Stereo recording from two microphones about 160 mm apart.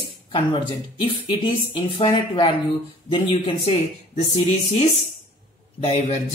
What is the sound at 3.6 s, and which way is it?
Speech, 40° left (ahead or behind).